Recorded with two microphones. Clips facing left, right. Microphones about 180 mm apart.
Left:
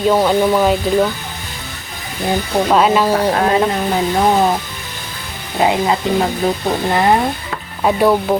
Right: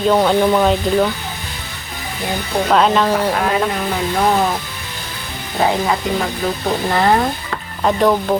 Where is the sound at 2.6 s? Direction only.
5° left (ahead or behind).